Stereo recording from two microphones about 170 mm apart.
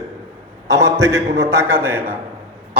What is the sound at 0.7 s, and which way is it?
A man's voice, 15° right (ahead or behind).